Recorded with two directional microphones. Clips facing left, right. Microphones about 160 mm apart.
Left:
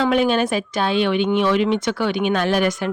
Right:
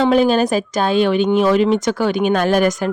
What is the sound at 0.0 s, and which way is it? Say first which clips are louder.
A woman's voice: right 4 dB; 35° right (ahead or behind).